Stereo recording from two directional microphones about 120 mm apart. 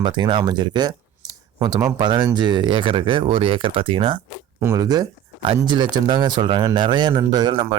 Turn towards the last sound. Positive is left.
turn(degrees=-35)  # may be behind; listen again after turning